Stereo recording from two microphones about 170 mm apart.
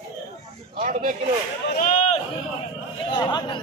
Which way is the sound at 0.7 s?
55° right (ahead or behind).